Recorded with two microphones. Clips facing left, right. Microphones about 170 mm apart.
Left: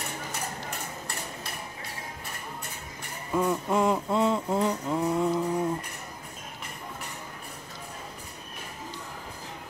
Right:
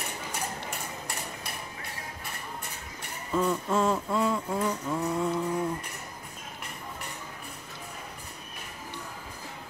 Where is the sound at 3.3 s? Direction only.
15° left (ahead or behind).